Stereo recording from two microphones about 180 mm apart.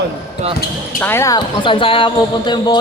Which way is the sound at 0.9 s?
10° left (ahead or behind).